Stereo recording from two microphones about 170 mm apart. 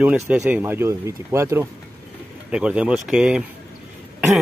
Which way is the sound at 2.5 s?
5° right (ahead or behind).